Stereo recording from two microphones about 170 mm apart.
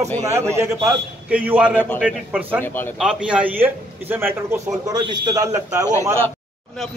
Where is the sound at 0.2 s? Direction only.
15° right (ahead or behind).